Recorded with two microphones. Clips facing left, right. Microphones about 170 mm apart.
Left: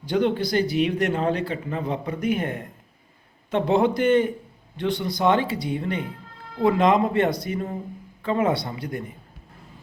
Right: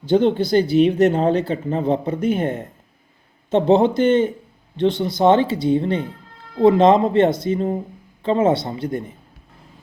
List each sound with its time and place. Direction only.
0.0 s speech: 25° right (ahead or behind)